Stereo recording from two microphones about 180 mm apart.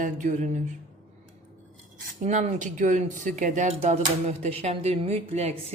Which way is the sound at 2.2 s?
40° right (ahead or behind).